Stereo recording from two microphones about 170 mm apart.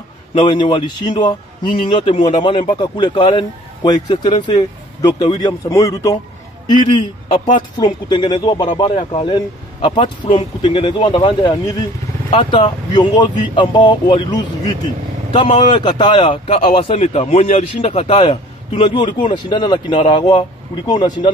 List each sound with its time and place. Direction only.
0.3 s a man's voice: 25° left (ahead or behind)